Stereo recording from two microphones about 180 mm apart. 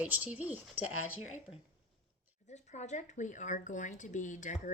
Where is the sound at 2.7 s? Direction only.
40° left (ahead or behind).